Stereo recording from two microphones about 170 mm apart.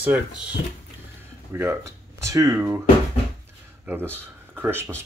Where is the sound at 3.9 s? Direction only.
10° right (ahead or behind).